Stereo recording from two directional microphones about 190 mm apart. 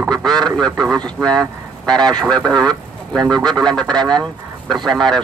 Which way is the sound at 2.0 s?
20° right (ahead or behind).